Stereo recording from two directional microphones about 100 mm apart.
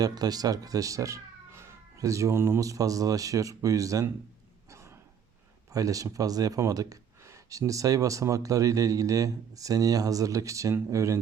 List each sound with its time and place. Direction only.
0.0 s speech: 40° right (ahead or behind)
4.7 s a sound: 30° right (ahead or behind)
5.7 s speech: 35° right (ahead or behind)